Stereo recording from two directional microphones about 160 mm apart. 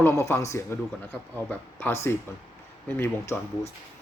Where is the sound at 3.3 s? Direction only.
15° left (ahead or behind).